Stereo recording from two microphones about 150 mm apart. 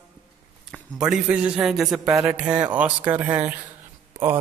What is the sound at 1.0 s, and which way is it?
A man's voice, 5° right (ahead or behind).